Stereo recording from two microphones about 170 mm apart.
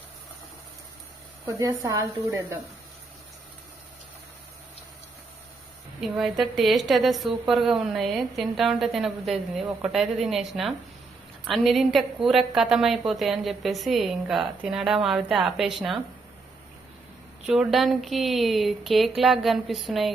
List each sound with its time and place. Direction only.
1.5 s speech: 20° right (ahead or behind)
6.0 s a woman's voice: centre (ahead or behind)
17.4 s a woman's voice: 5° right (ahead or behind)